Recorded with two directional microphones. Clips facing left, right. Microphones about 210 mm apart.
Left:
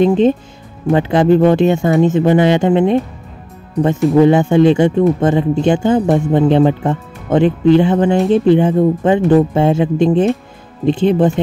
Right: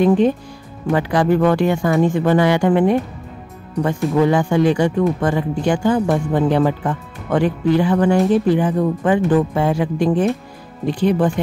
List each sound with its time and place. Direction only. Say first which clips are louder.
0.0 s speech: left 3 dB; 20° left (ahead or behind)
4.1 s speech: left 6 dB; 20° left (ahead or behind)